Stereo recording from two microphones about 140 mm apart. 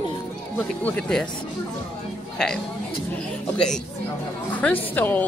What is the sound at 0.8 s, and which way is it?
Speech, 10° left (ahead or behind).